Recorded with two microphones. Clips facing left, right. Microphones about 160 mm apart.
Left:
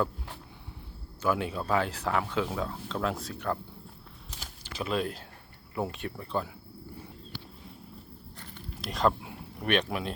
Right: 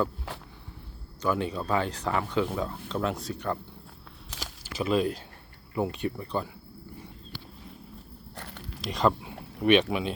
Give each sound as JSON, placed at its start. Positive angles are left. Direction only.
{"t": 0.3, "sound": "a sound", "side_deg": -90}
{"t": 1.2, "sound": "speech", "side_deg": 5}
{"t": 4.6, "sound": "speech", "side_deg": -5}
{"t": 8.4, "sound": "walk", "side_deg": -75}
{"t": 8.8, "sound": "speech", "side_deg": 0}